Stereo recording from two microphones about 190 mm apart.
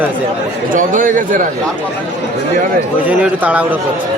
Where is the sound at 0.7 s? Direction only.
45° right (ahead or behind).